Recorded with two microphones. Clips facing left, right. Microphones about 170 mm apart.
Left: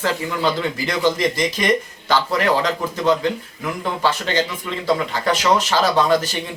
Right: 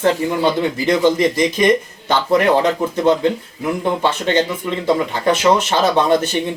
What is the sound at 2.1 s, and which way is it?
Speech, 20° right (ahead or behind).